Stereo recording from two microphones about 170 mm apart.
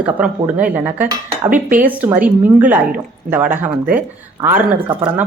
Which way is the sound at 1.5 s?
50° right (ahead or behind).